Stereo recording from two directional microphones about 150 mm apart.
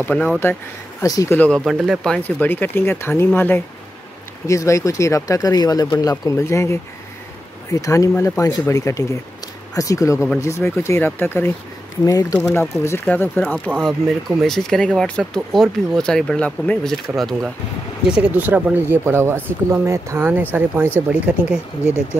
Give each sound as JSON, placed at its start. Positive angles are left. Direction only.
{"t": 0.0, "sound": "speech", "side_deg": 5}
{"t": 1.0, "sound": "speech", "side_deg": 20}
{"t": 1.6, "sound": "speech", "side_deg": 0}
{"t": 12.8, "sound": "speech", "side_deg": 15}
{"t": 13.7, "sound": "speech", "side_deg": 0}